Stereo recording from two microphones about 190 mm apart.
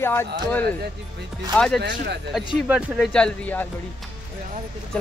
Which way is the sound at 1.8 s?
60° right (ahead or behind).